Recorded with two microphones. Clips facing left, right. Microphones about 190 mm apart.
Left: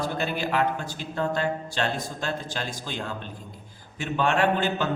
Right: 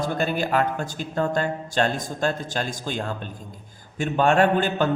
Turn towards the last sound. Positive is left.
turn(degrees=-50)  # may be behind; listen again after turning